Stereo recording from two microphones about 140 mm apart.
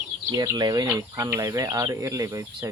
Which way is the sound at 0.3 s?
25° right (ahead or behind).